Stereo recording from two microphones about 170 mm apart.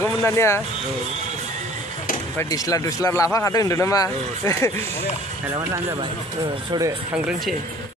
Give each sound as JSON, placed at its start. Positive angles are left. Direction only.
{"t": 0.0, "sound": "speech", "side_deg": 15}
{"t": 2.3, "sound": "speech", "side_deg": 20}
{"t": 5.5, "sound": "speech", "side_deg": -15}
{"t": 5.9, "sound": "speech", "side_deg": -25}
{"t": 7.2, "sound": "speech", "side_deg": -5}